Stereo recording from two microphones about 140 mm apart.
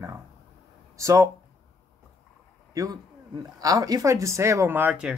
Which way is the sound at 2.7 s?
25° right (ahead or behind).